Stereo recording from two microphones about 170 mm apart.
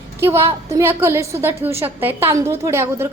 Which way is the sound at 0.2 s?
15° right (ahead or behind).